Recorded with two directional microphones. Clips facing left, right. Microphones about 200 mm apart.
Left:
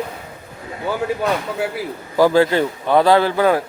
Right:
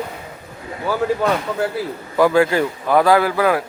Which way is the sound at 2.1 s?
30° left (ahead or behind).